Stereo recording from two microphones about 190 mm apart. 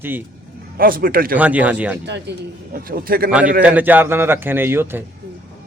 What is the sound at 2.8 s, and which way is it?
Speech, 50° right (ahead or behind).